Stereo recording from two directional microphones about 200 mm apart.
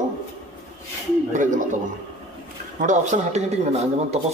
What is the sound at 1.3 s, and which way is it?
Speech, 40° right (ahead or behind).